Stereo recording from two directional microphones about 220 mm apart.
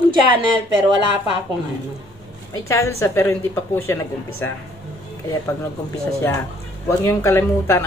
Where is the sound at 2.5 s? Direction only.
15° left (ahead or behind).